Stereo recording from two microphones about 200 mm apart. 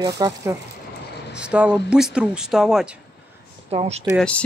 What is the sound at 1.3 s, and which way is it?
Speech, 5° right (ahead or behind).